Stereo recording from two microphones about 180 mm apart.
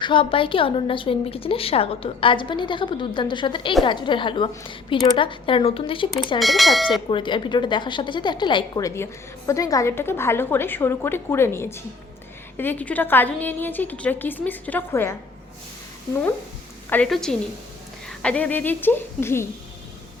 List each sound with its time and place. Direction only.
0.0 s a woman's voice: 30° left (ahead or behind)
6.4 s speech: centre (ahead or behind)
7.1 s a woman's voice: 25° left (ahead or behind)
16.9 s a woman's voice: 5° left (ahead or behind)